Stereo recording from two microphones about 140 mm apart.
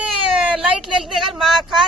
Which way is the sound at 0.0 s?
5° right (ahead or behind).